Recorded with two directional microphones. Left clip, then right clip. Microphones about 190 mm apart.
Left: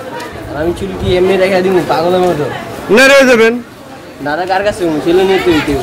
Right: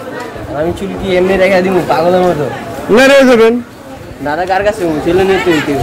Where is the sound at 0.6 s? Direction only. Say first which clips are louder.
Even; 5° right (ahead or behind).